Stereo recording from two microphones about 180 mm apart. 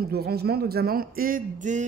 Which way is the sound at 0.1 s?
60° right (ahead or behind).